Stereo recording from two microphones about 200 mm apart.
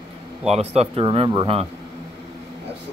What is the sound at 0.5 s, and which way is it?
A man's voice, 30° right (ahead or behind).